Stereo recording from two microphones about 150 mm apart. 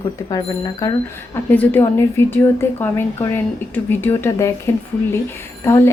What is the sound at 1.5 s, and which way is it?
A woman's voice, 10° left (ahead or behind).